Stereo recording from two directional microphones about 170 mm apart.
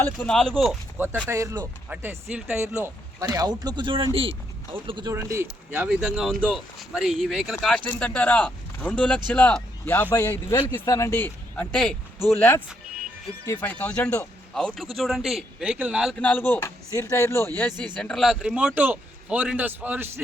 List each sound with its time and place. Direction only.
0.0 s speech: 5° left (ahead or behind)
0.9 s a man's voice: 10° right (ahead or behind); by 5.1 s 30° right (ahead or behind)
5.1 s speech: 15° right (ahead or behind)
16.1 s speech: 10° left (ahead or behind)
17.9 s a man's voice: 5° left (ahead or behind); by 20.2 s 10° right (ahead or behind)